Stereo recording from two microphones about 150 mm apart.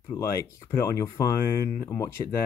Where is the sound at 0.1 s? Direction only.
20° left (ahead or behind).